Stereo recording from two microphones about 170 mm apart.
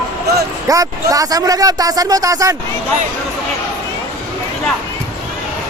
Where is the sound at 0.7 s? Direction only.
20° right (ahead or behind).